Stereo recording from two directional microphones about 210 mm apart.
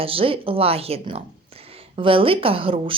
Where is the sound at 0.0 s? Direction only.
25° right (ahead or behind).